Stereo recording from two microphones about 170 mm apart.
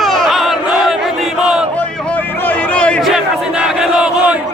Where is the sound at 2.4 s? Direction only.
10° left (ahead or behind).